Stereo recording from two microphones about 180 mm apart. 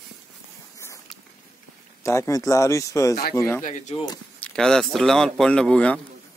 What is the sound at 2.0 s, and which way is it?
Speech, 15° left (ahead or behind).